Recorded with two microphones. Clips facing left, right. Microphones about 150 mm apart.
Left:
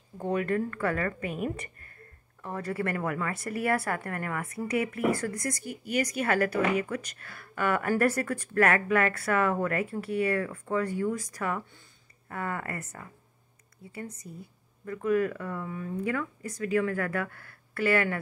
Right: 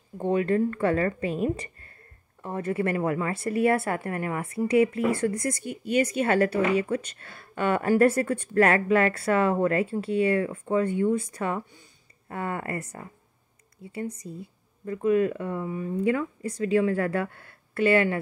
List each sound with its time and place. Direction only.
0.2 s speech: 25° right (ahead or behind)
14.2 s speech: 25° right (ahead or behind)